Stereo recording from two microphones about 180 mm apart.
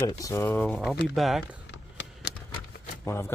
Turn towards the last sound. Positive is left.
turn(degrees=15)  # may be behind; listen again after turning